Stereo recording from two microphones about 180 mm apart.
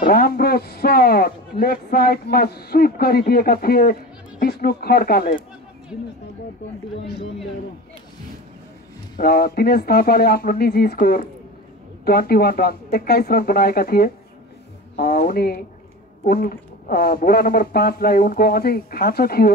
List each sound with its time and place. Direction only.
0.0 s a man's voice: 55° left (ahead or behind)
9.2 s a man's voice: 55° left (ahead or behind)